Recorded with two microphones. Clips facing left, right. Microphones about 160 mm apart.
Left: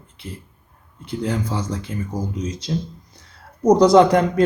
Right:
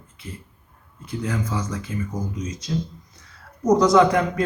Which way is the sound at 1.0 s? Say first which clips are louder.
Left 3 dB; 30° left (ahead or behind).